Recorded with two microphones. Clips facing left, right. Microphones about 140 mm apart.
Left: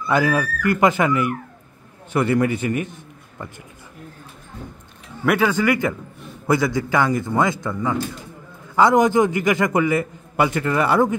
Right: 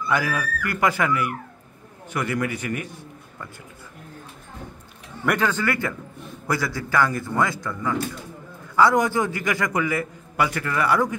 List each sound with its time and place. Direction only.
0.1 s a man's voice: 25° left (ahead or behind)
5.2 s a man's voice: 10° left (ahead or behind); by 11.1 s 25° left (ahead or behind)